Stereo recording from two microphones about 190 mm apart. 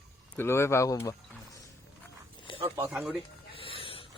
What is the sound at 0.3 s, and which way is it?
Speech, 15° left (ahead or behind).